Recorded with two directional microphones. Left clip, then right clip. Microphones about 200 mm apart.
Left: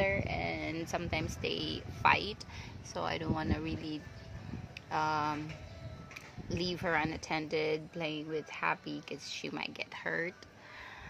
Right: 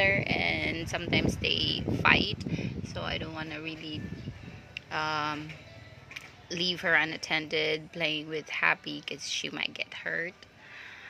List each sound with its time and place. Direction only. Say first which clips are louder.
0.0 s speech: right 7 dB; 5° right (ahead or behind); by 4.0 s 15° left (ahead or behind)
4.7 s a sound: right 2 dB; 10° left (ahead or behind)
6.5 s speech: right 7 dB; centre (ahead or behind)
9.9 s speech: even; 20° left (ahead or behind)